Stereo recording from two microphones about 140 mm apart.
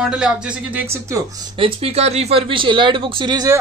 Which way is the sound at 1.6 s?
40° right (ahead or behind).